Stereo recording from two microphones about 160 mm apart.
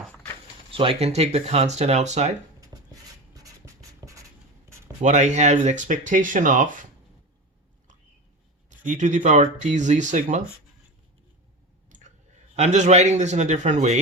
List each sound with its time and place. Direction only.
0.7 s speech: 35° right (ahead or behind)
2.6 s writing: 20° right (ahead or behind)
4.9 s speech: 45° right (ahead or behind)
8.8 s speech: 50° right (ahead or behind)
11.9 s a sound: 50° right (ahead or behind)
12.5 s speech: 45° right (ahead or behind)